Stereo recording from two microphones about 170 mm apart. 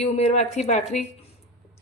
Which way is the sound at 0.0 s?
40° left (ahead or behind).